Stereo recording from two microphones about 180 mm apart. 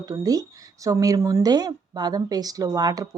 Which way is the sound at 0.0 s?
20° right (ahead or behind).